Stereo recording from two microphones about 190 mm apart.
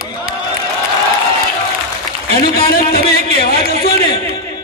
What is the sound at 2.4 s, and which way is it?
A man's voice, 50° left (ahead or behind).